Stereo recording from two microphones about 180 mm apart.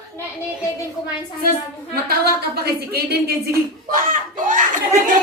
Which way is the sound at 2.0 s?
60° right (ahead or behind).